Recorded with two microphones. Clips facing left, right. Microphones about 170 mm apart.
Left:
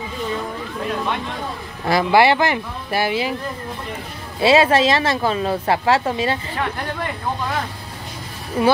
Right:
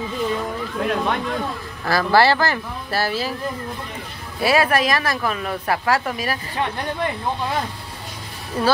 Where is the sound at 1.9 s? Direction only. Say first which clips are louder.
Left 2 dB; 20° left (ahead or behind).